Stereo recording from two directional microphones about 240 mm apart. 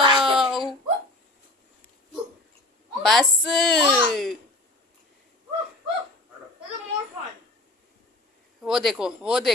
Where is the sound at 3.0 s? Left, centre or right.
Centre.